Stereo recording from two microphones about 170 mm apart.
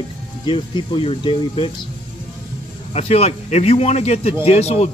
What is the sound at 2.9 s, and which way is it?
Speech, 35° left (ahead or behind).